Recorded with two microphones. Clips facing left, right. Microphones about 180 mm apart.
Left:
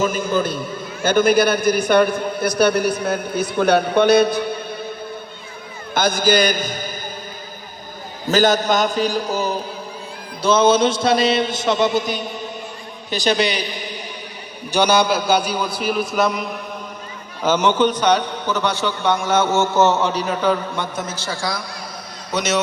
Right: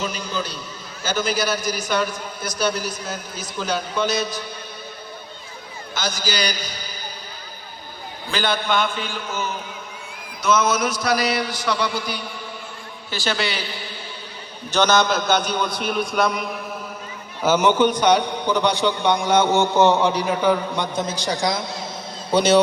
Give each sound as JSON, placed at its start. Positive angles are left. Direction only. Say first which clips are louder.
{"t": 0.0, "sound": "a man's voice", "louder": "left 8 dB", "side_deg": 50}
{"t": 5.9, "sound": "a man's voice", "louder": "left 10 dB", "side_deg": 55}
{"t": 8.3, "sound": "a man's voice", "louder": "left 7 dB", "side_deg": 40}